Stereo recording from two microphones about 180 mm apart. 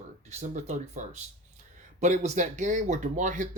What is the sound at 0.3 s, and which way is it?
Speech, 40° right (ahead or behind).